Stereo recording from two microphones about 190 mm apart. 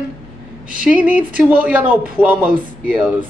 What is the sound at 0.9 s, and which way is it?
Speech, 10° right (ahead or behind).